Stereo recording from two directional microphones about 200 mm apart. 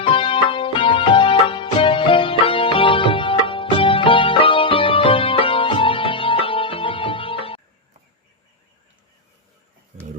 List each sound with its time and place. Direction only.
0.0 s music: 25° left (ahead or behind)